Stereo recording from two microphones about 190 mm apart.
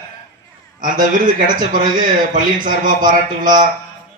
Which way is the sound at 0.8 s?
45° right (ahead or behind).